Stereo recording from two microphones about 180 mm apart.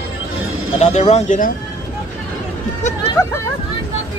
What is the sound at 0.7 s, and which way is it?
Speech, 40° left (ahead or behind).